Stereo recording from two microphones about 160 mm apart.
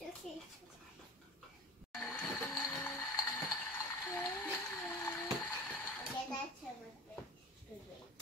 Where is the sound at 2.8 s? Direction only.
15° left (ahead or behind).